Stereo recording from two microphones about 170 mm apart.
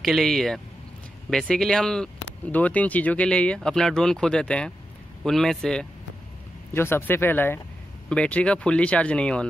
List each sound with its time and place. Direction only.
0.0 s speech: centre (ahead or behind)
6.7 s speech: 15° left (ahead or behind)